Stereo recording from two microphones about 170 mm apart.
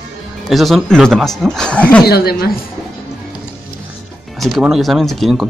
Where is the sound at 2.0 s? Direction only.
65° left (ahead or behind).